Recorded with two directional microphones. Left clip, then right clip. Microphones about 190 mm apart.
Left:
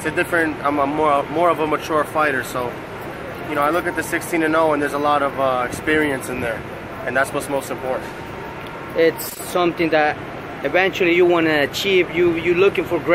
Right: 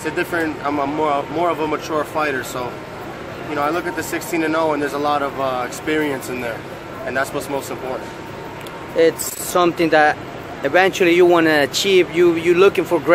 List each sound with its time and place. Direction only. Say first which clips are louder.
0.0 s speech: left 2 dB; 5° left (ahead or behind)
8.9 s speech: right 2 dB; 15° right (ahead or behind)